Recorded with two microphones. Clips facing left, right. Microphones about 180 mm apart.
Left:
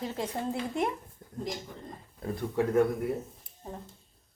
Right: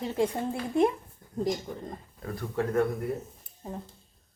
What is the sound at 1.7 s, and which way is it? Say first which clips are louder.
Speech: right 7 dB; 40° right (ahead or behind).